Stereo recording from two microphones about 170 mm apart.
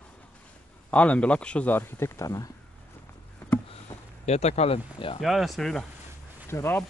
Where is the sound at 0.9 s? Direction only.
10° left (ahead or behind).